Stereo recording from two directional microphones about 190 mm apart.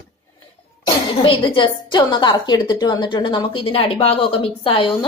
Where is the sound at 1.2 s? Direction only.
25° left (ahead or behind).